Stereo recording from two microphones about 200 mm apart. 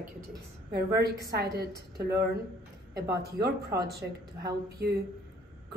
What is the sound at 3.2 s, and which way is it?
A woman's voice, 55° right (ahead or behind).